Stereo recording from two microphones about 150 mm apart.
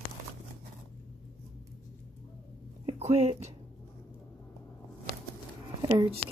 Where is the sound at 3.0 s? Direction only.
45° right (ahead or behind).